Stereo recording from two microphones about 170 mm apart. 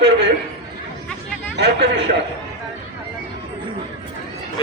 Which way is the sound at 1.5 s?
90° right.